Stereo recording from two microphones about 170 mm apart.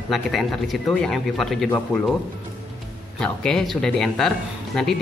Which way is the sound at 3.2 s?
5° left (ahead or behind).